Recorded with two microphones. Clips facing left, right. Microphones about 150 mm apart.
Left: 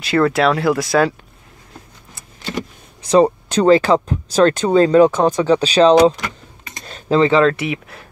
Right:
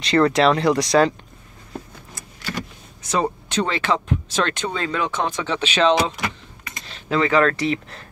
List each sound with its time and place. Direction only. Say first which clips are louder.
0.0 s speech: left 1 dB; 5° left (ahead or behind)
3.1 s speech: left 10 dB; 35° left (ahead or behind)
6.7 s keys jangling: left 7 dB; 45° left (ahead or behind)
7.2 s speech: left 5 dB; 25° left (ahead or behind)